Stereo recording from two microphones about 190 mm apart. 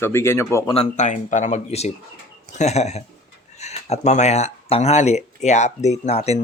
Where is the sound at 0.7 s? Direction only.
35° left (ahead or behind).